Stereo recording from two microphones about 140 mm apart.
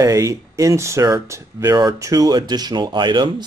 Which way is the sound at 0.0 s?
20° right (ahead or behind).